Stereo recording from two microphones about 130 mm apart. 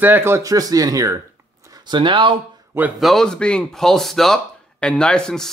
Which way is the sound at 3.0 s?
Centre (ahead or behind).